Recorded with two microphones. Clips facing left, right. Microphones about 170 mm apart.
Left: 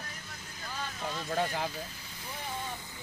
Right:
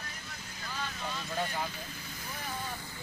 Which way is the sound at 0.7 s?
45° left (ahead or behind).